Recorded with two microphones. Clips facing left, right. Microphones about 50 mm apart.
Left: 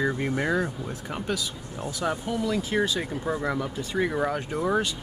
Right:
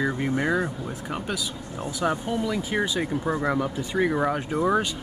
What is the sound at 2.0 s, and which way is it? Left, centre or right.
Speech, centre.